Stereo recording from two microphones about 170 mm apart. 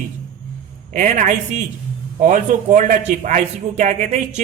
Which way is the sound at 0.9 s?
50° right (ahead or behind).